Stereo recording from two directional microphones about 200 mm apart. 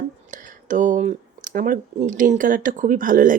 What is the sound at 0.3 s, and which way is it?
Speech, 40° right (ahead or behind).